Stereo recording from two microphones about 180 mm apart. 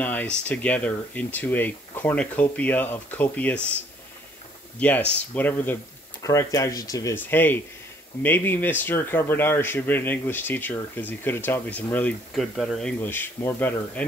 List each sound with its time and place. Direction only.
0.0 s a man's voice: 10° left (ahead or behind)
4.7 s a man's voice: 10° left (ahead or behind)